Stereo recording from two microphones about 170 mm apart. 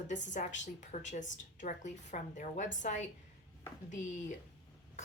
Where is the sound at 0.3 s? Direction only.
45° left (ahead or behind).